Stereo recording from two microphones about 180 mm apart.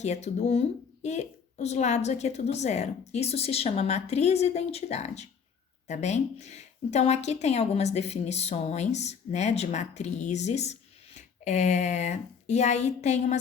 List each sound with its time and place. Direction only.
0.0 s a woman's voice: 40° left (ahead or behind)